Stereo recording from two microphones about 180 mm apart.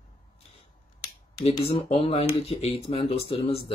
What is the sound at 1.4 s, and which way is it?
Speech, 30° left (ahead or behind).